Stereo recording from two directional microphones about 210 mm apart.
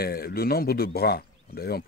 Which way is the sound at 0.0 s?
45° left (ahead or behind).